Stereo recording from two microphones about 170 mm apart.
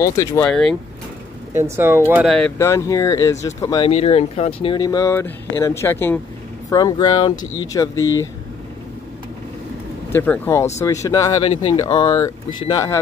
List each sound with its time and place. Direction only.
0.0 s speech: 20° left (ahead or behind)
0.5 s speech: 5° left (ahead or behind)
1.5 s speech: 15° right (ahead or behind)
2.2 s speech: 5° left (ahead or behind)
2.6 s speech: 20° left (ahead or behind)
3.8 s speech: 35° left (ahead or behind); by 8.3 s 20° left (ahead or behind)
10.1 s speech: 10° left (ahead or behind)